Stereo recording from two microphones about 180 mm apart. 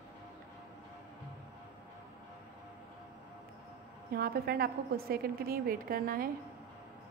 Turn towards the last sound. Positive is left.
turn(degrees=-55)  # may be behind; listen again after turning